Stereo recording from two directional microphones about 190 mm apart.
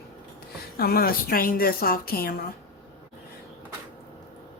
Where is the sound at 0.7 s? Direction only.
50° left (ahead or behind).